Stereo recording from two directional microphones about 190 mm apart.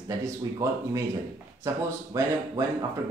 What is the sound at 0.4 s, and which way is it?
Speech, 15° right (ahead or behind).